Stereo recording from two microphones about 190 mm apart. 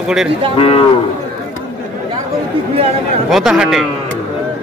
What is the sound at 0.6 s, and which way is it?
Speech, 30° left (ahead or behind).